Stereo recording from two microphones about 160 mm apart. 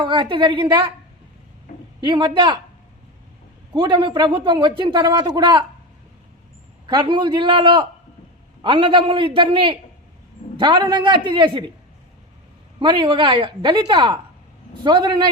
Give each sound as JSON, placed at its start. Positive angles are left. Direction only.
{"t": 0.0, "sound": "speech", "side_deg": -30}
{"t": 2.0, "sound": "a man's voice", "side_deg": -30}
{"t": 3.7, "sound": "a man's voice", "side_deg": -30}
{"t": 6.8, "sound": "a man's voice", "side_deg": -30}
{"t": 12.8, "sound": "a man's voice", "side_deg": -30}